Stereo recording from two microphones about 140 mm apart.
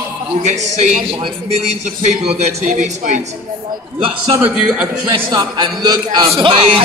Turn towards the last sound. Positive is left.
turn(degrees=-40)  # may be behind; listen again after turning